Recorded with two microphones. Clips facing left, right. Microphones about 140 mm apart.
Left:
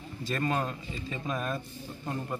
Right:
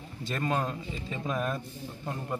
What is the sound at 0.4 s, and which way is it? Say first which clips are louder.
A man's voice: right 1 dB; 15° right (ahead or behind).